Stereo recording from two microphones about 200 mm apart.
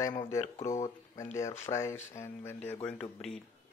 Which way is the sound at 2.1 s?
15° left (ahead or behind).